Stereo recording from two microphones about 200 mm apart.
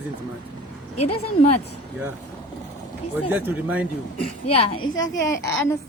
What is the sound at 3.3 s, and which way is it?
Speech, 10° right (ahead or behind).